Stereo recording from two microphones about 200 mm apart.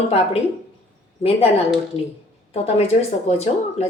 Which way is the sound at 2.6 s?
30° left (ahead or behind).